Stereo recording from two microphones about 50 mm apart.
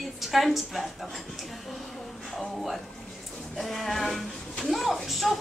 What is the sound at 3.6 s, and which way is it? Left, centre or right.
A woman's voice, centre.